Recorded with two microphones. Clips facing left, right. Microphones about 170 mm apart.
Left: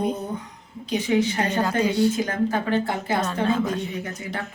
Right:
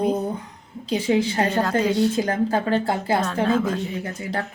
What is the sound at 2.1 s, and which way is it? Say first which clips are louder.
Speech: right 2 dB; 30° right (ahead or behind).